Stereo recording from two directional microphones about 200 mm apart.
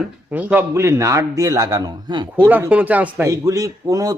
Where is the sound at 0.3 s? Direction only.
10° right (ahead or behind).